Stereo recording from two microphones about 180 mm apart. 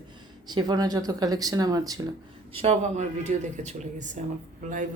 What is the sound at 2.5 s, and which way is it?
A man's voice, 35° right (ahead or behind).